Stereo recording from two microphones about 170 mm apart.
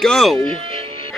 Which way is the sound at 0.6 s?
30° right (ahead or behind).